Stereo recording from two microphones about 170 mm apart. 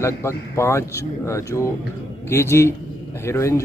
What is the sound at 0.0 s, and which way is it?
Speech, 15° left (ahead or behind).